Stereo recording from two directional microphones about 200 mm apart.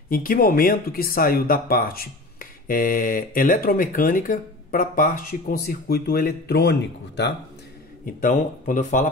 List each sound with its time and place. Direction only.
0.1 s speech: 45° left (ahead or behind)
8.0 s speech: 40° left (ahead or behind)